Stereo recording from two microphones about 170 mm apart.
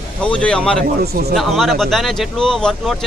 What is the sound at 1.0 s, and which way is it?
Speech, 65° right (ahead or behind).